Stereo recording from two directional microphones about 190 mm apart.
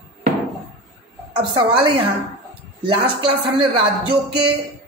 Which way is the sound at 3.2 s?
25° right (ahead or behind).